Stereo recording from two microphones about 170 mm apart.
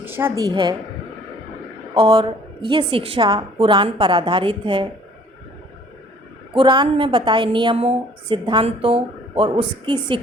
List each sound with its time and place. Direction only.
0.0 s a woman's voice: 10° right (ahead or behind)
2.0 s a woman's voice: 30° right (ahead or behind)
6.5 s a woman's voice: 30° right (ahead or behind)